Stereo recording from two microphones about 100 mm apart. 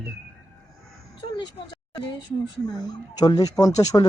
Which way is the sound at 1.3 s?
45° left (ahead or behind).